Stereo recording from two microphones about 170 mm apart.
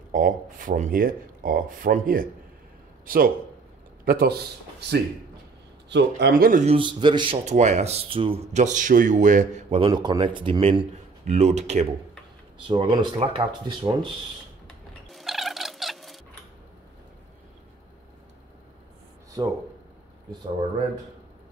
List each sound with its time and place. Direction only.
0.1 s speech: 50° right (ahead or behind); by 5.0 s 75° right (ahead or behind)
5.9 s a man's voice: 85° right
6.5 s speech: 35° right (ahead or behind)
7.4 s speech: 45° right (ahead or behind)
8.6 s speech: 50° right (ahead or behind)
12.5 s speech: 30° right (ahead or behind)
15.0 s a sound: centre (ahead or behind)
19.4 s speech: 20° right (ahead or behind)